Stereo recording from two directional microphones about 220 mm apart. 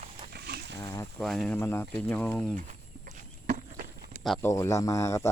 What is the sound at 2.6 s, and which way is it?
Livestock, 35° right (ahead or behind).